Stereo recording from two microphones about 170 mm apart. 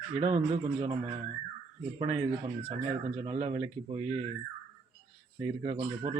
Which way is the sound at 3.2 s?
35° right (ahead or behind).